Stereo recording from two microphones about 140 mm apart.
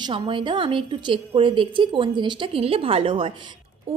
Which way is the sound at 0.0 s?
35° right (ahead or behind).